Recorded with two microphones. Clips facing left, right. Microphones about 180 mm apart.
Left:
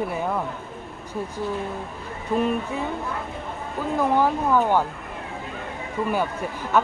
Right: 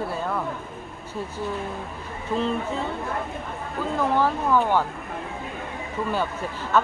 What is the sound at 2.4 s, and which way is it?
Speech, 10° left (ahead or behind).